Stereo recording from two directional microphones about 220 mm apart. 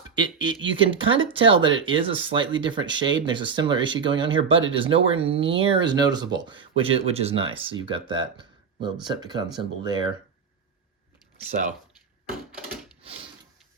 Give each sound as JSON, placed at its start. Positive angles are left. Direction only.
{"t": 0.1, "sound": "speech", "side_deg": -20}